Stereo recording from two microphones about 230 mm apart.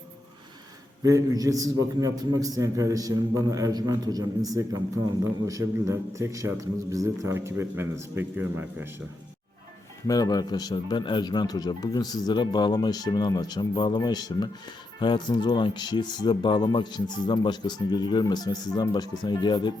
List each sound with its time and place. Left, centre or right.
1.0 s a man's voice: centre
10.1 s speech: centre